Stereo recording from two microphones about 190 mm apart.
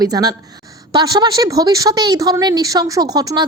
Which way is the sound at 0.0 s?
20° right (ahead or behind).